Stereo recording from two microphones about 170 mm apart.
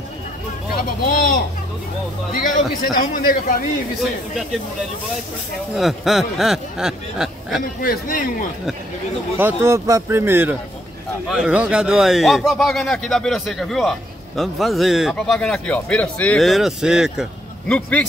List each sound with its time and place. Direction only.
1.1 s speech: 55° left (ahead or behind)
2.8 s a man's voice: 55° left (ahead or behind)
5.8 s speech: centre (ahead or behind)
7.8 s a man's voice: 55° left (ahead or behind)
9.4 s speech: 15° right (ahead or behind)
17.7 s a man's voice: 10° left (ahead or behind)